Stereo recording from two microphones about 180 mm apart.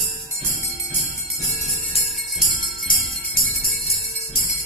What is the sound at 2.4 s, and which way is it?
Jingle bell, 50° left (ahead or behind).